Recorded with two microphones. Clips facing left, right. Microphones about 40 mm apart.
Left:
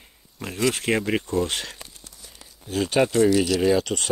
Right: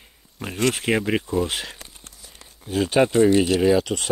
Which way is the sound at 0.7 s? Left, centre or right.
Centre.